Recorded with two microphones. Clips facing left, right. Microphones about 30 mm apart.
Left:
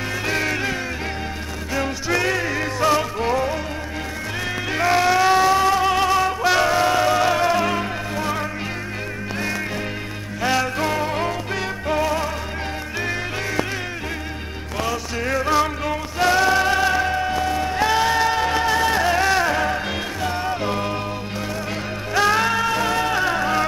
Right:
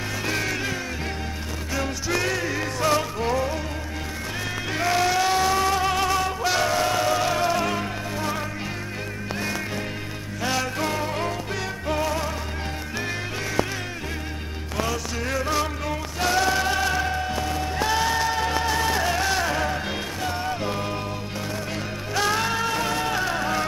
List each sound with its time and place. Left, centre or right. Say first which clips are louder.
0.3 s music: left 4 dB; centre
4.7 s music: left 4 dB; centre
10.4 s music: left 5 dB; centre
14.8 s music: left 3 dB; centre
22.1 s music: left 5 dB; centre